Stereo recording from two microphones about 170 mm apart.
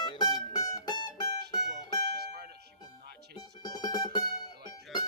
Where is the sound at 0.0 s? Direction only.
25° left (ahead or behind).